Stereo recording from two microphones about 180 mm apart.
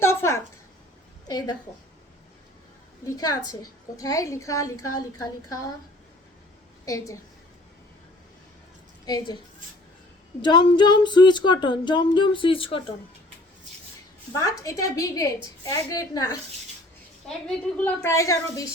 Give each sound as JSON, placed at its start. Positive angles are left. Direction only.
{"t": 0.0, "sound": "a sound", "side_deg": 15}
{"t": 1.3, "sound": "a woman's voice", "side_deg": 25}
{"t": 3.0, "sound": "a woman's voice", "side_deg": 20}
{"t": 6.8, "sound": "a woman's voice", "side_deg": 20}
{"t": 9.0, "sound": "a woman's voice", "side_deg": 25}
{"t": 10.4, "sound": "a woman's voice", "side_deg": 25}
{"t": 14.3, "sound": "a woman's voice", "side_deg": 15}
{"t": 17.2, "sound": "a woman's voice", "side_deg": 5}